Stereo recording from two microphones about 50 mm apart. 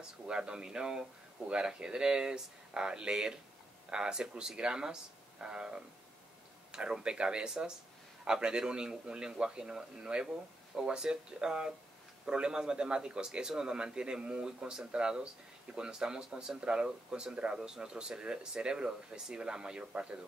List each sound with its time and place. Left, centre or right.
0.3 s speech: centre